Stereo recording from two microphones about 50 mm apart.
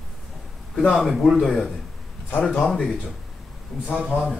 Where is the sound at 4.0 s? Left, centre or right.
Centre.